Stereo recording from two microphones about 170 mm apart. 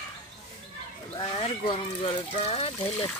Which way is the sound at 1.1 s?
30° left (ahead or behind).